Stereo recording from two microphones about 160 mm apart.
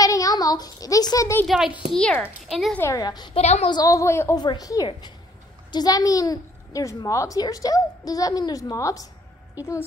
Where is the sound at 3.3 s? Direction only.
40° left (ahead or behind).